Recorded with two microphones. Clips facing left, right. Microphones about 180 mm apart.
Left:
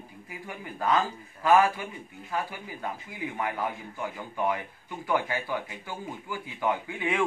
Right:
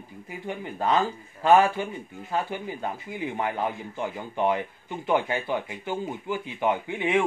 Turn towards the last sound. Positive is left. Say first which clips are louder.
# right 5 dB
turn(degrees=-20)  # may be behind; listen again after turning